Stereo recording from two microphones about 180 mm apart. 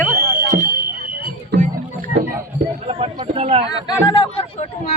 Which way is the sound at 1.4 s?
50° right (ahead or behind).